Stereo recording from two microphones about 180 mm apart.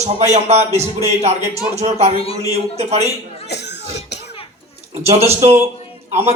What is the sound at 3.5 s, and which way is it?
Cough, 70° left (ahead or behind).